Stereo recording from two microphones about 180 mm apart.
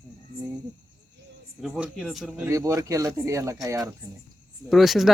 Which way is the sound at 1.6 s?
Centre (ahead or behind).